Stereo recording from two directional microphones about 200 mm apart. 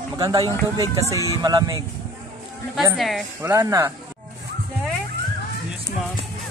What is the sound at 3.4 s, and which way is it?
Speech, 15° right (ahead or behind).